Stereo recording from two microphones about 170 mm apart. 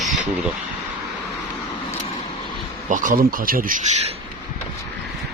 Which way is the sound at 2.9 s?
50° right (ahead or behind).